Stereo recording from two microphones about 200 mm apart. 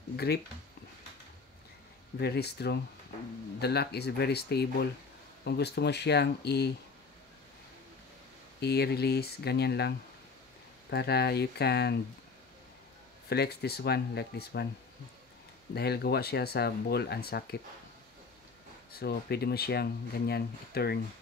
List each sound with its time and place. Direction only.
0.1 s speech: 50° left (ahead or behind)
2.1 s speech: 55° left (ahead or behind)
8.5 s speech: 55° left (ahead or behind)
13.3 s speech: 55° left (ahead or behind)
15.7 s speech: 55° left (ahead or behind)
18.9 s speech: 50° left (ahead or behind)